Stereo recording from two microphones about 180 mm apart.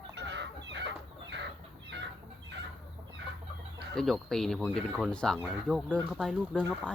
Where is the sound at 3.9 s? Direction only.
Centre (ahead or behind).